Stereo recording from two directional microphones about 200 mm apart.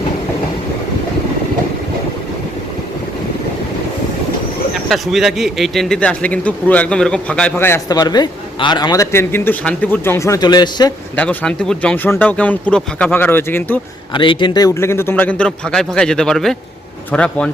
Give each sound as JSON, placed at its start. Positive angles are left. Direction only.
{"t": 4.9, "sound": "a man's voice", "side_deg": 0}
{"t": 11.2, "sound": "a man's voice", "side_deg": 5}
{"t": 14.1, "sound": "a man's voice", "side_deg": 25}